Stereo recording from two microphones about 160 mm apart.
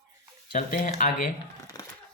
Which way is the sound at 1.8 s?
25° left (ahead or behind).